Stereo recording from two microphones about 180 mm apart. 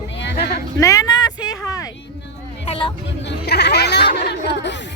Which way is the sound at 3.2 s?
65° left (ahead or behind).